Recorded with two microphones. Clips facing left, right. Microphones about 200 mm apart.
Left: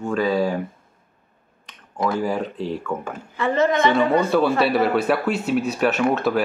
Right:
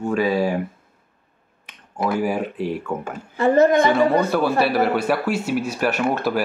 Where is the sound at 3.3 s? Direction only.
40° right (ahead or behind).